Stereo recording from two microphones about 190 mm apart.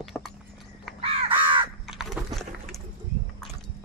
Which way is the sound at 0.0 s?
Centre (ahead or behind).